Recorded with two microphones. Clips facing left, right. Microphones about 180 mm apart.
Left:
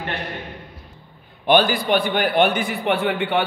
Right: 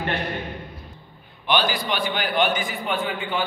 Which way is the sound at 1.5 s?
55° left (ahead or behind).